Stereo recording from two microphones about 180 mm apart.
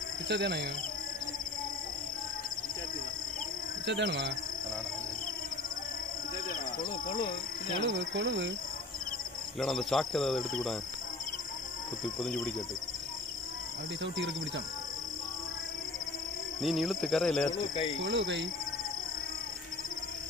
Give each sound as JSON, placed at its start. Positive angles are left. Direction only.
{"t": 0.3, "sound": "speech", "side_deg": -65}
{"t": 3.8, "sound": "speech", "side_deg": -80}
{"t": 7.8, "sound": "speech", "side_deg": -90}
{"t": 9.6, "sound": "speech", "side_deg": 0}
{"t": 14.0, "sound": "speech", "side_deg": -80}
{"t": 16.6, "sound": "speech", "side_deg": 0}
{"t": 17.6, "sound": "speech", "side_deg": 30}
{"t": 18.0, "sound": "speech", "side_deg": -90}